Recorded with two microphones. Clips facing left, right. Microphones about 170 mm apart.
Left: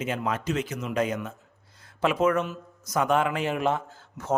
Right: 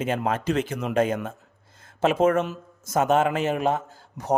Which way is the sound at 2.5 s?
45° right (ahead or behind).